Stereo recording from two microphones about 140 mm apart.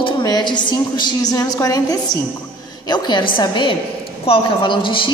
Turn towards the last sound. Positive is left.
turn(degrees=35)  # may be behind; listen again after turning